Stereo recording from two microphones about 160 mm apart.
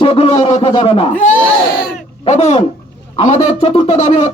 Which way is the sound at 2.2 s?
45° left (ahead or behind).